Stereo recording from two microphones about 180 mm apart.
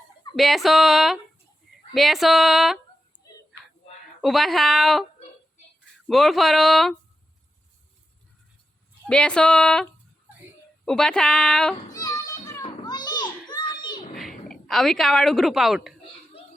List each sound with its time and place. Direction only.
0.3 s speech: centre (ahead or behind)
4.2 s speech: centre (ahead or behind)
6.1 s speech: centre (ahead or behind)
9.0 s speech: 5° left (ahead or behind)
10.3 s a sound: 10° right (ahead or behind)
10.8 s speech: 5° left (ahead or behind)
11.9 s children playing: 20° left (ahead or behind)
13.5 s a sound: 25° left (ahead or behind)
14.2 s a woman's voice: centre (ahead or behind)